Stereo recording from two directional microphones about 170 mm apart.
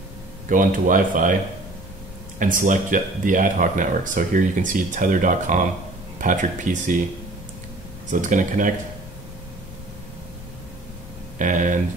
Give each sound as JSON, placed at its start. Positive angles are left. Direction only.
{"t": 0.5, "sound": "speech", "side_deg": -50}
{"t": 2.3, "sound": "speech", "side_deg": -50}
{"t": 8.1, "sound": "speech", "side_deg": -50}
{"t": 11.3, "sound": "speech", "side_deg": -50}